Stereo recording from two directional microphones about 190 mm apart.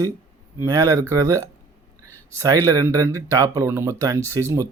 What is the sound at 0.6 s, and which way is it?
Speech, 15° right (ahead or behind).